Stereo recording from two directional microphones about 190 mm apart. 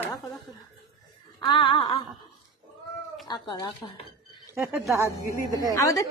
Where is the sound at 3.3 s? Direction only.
20° left (ahead or behind).